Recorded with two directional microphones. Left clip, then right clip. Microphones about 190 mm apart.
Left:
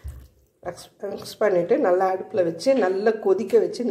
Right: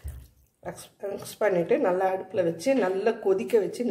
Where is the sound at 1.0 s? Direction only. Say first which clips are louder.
Left 4 dB; 15° left (ahead or behind).